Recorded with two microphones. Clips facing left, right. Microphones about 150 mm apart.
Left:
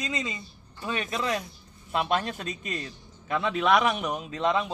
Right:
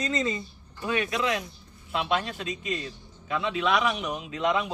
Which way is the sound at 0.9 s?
25° left (ahead or behind).